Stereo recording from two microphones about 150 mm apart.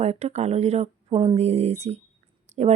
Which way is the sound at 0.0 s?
45° right (ahead or behind).